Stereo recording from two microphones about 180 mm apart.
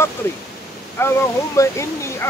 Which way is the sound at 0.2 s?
15° left (ahead or behind).